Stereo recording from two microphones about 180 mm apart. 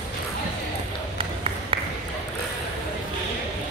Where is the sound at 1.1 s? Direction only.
30° right (ahead or behind).